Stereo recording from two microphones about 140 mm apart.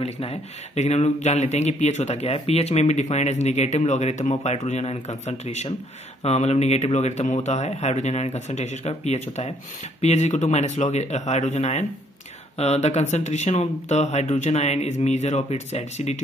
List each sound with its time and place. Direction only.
0.0 s speech: 45° left (ahead or behind)